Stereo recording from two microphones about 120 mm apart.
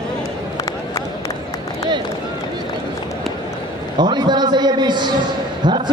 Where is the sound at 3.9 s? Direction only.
35° right (ahead or behind).